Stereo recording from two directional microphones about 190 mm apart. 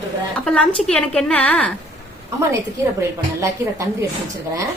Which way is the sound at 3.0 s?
15° right (ahead or behind).